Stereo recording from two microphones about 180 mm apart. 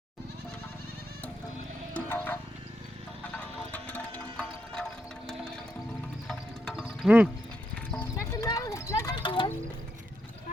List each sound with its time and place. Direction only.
1.9 s music: 10° left (ahead or behind)
3.3 s music: 10° left (ahead or behind); by 7.3 s 5° right (ahead or behind)
7.9 s music: 10° left (ahead or behind); by 9.5 s 25° left (ahead or behind)